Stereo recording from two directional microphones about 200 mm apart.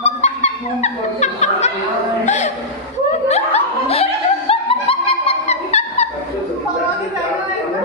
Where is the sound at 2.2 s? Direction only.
35° left (ahead or behind).